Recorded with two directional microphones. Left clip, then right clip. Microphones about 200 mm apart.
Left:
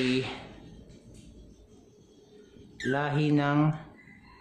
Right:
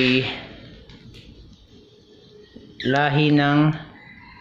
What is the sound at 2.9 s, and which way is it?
Speech, centre (ahead or behind).